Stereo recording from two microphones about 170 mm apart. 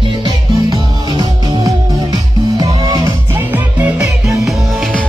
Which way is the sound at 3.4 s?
10° right (ahead or behind).